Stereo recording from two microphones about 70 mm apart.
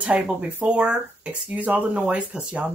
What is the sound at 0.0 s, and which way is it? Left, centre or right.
Speech, centre.